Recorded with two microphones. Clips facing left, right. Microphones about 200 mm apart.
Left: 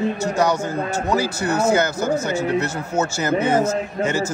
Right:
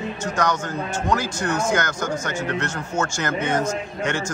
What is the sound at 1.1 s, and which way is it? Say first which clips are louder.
Speech: left 2 dB; 5° left (ahead or behind).